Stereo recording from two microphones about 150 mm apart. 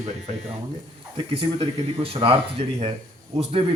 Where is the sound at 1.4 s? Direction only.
40° right (ahead or behind).